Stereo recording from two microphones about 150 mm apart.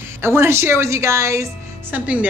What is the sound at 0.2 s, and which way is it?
Music, 15° right (ahead or behind).